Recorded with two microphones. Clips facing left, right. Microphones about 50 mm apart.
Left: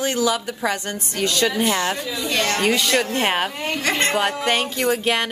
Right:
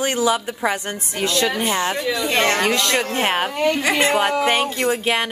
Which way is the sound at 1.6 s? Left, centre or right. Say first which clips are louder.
Right 1 dB; right.